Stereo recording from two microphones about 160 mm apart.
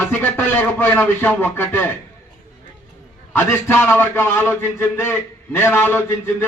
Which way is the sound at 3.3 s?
15° left (ahead or behind).